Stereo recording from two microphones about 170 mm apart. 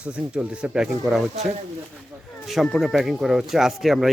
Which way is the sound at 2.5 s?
Centre (ahead or behind).